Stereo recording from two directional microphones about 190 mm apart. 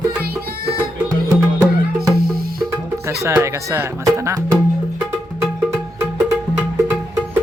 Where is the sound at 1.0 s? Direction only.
20° right (ahead or behind).